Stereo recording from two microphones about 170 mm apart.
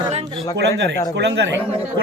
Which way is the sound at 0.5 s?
90° right.